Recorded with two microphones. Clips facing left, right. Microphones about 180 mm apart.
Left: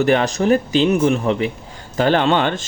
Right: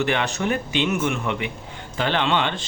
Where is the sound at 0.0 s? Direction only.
40° left (ahead or behind).